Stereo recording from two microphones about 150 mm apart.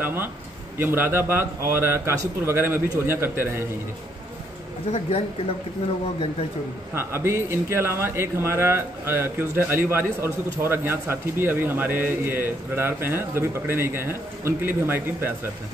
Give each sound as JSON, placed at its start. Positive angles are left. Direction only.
{"t": 0.0, "sound": "a man's voice", "side_deg": -15}
{"t": 6.9, "sound": "a man's voice", "side_deg": -15}